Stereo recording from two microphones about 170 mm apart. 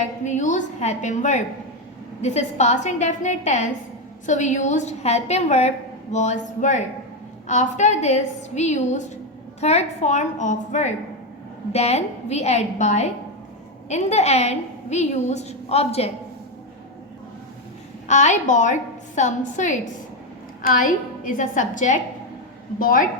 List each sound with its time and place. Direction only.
0.3 s a woman's voice: 45° left (ahead or behind)
18.1 s a woman's voice: 45° left (ahead or behind)